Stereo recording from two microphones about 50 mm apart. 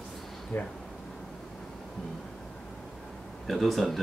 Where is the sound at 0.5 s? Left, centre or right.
Left.